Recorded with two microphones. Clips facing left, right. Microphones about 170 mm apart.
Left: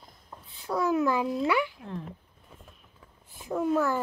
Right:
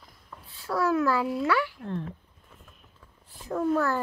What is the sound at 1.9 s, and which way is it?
Speech, 5° left (ahead or behind).